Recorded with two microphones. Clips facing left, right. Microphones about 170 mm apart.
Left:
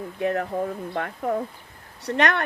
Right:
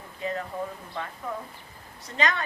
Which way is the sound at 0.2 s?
65° left (ahead or behind).